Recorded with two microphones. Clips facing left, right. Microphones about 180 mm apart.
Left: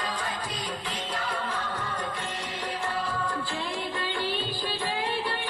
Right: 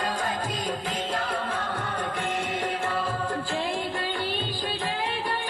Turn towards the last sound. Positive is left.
turn(degrees=-50)  # may be behind; listen again after turning